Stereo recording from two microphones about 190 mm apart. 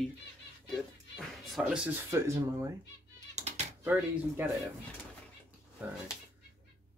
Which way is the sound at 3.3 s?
35° right (ahead or behind).